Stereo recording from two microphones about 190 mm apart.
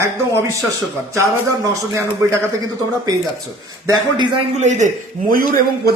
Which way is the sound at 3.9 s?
25° right (ahead or behind).